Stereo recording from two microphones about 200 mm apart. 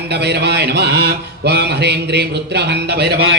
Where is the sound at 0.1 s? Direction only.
55° right (ahead or behind).